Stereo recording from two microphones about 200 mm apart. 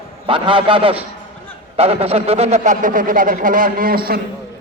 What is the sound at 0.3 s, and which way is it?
A man's voice, 25° right (ahead or behind).